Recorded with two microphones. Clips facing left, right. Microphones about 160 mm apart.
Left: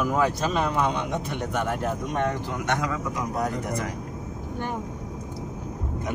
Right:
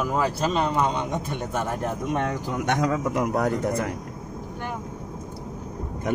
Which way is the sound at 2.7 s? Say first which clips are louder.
Right 5 dB; 45° right (ahead or behind).